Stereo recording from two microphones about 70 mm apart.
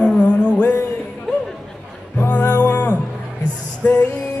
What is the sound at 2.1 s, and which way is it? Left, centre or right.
Music, left.